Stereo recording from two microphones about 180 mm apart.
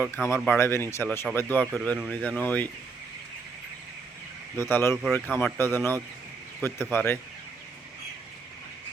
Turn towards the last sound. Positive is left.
turn(degrees=10)  # may be behind; listen again after turning